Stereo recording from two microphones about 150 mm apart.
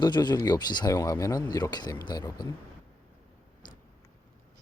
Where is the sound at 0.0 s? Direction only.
30° left (ahead or behind).